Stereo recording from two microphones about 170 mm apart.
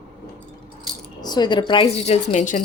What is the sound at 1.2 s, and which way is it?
A woman's voice, 25° left (ahead or behind).